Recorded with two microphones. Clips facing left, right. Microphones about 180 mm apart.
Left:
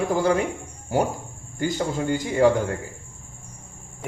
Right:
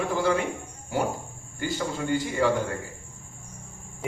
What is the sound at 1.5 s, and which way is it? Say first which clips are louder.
Speech: left 4 dB; 40° left (ahead or behind).